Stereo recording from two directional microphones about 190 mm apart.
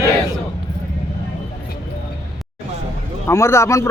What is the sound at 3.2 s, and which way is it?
Speech, 15° left (ahead or behind).